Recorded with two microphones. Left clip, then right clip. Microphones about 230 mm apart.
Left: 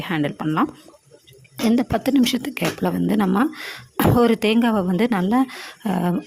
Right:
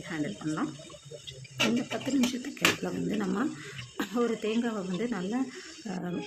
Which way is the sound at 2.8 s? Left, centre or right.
Left.